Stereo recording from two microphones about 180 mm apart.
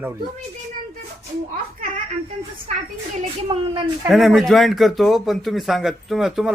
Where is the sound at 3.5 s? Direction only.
30° right (ahead or behind).